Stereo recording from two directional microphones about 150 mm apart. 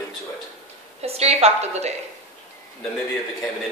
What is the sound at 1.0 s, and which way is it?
Speech, 45° right (ahead or behind).